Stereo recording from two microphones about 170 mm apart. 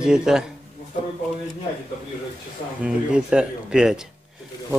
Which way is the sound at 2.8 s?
5° right (ahead or behind).